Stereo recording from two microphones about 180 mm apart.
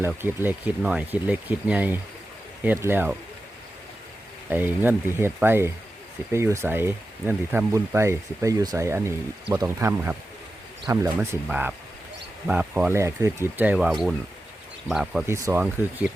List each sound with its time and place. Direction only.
0.0 s speech: 10° right (ahead or behind)
4.4 s speech: 10° right (ahead or behind)
15.3 s speech: 15° right (ahead or behind)